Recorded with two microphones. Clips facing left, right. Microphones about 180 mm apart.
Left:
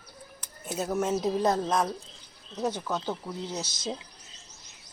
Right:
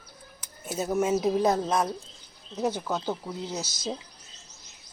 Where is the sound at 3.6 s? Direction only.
20° left (ahead or behind).